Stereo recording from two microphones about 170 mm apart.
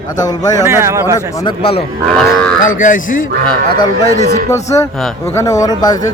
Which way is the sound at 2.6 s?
50° left (ahead or behind).